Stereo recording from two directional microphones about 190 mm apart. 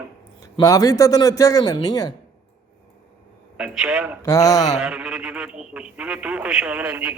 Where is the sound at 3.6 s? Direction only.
5° right (ahead or behind).